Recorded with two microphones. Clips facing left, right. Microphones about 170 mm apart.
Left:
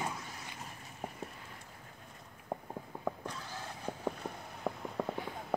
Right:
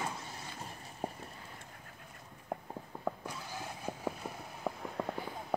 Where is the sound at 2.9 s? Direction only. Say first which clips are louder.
Even; 15° left (ahead or behind).